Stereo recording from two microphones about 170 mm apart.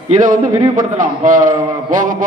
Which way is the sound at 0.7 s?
50° right (ahead or behind).